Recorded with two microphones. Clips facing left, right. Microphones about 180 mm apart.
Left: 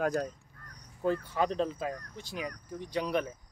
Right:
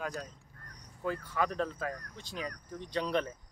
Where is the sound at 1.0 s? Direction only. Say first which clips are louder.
Left 4 dB; 25° left (ahead or behind).